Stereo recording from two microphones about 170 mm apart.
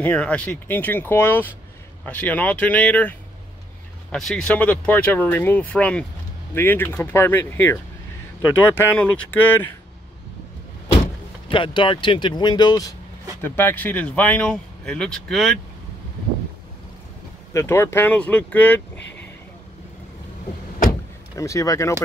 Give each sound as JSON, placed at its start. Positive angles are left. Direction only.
{"t": 0.0, "sound": "speech", "side_deg": 10}
{"t": 11.4, "sound": "speech", "side_deg": 30}
{"t": 13.4, "sound": "speech", "side_deg": 10}
{"t": 17.5, "sound": "speech", "side_deg": 15}
{"t": 18.9, "sound": "a sound", "side_deg": 90}
{"t": 21.4, "sound": "speech", "side_deg": 20}